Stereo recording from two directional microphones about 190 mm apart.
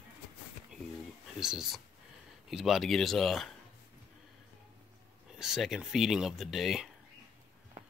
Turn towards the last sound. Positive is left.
turn(degrees=0)  # may be behind; listen again after turning